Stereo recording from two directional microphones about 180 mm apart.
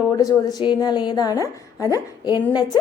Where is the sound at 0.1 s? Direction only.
20° left (ahead or behind).